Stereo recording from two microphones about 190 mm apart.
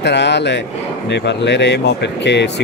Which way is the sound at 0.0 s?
65° left (ahead or behind).